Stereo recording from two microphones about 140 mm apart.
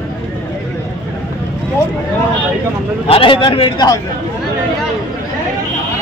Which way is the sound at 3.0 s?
40° left (ahead or behind).